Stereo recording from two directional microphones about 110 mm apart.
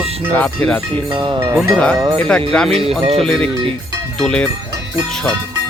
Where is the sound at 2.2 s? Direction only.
5° left (ahead or behind).